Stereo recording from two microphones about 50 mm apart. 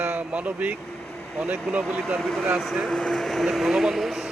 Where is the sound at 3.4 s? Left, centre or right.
Centre.